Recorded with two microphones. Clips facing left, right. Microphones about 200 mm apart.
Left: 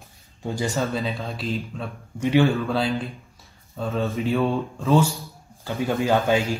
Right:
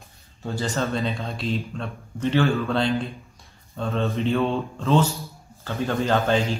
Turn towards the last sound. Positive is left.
turn(degrees=10)  # may be behind; listen again after turning